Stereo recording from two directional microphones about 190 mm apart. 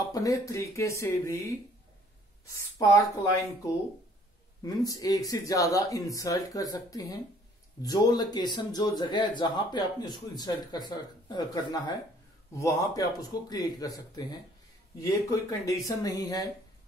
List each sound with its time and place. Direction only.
0.0 s speech: 20° left (ahead or behind)
2.5 s speech: 15° left (ahead or behind)
4.6 s speech: 20° left (ahead or behind)